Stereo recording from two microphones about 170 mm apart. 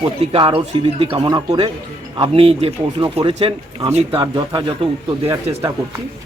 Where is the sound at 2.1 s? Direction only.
35° right (ahead or behind).